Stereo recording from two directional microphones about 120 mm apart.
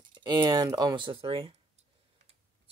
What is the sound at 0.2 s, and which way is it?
Speech, 35° right (ahead or behind).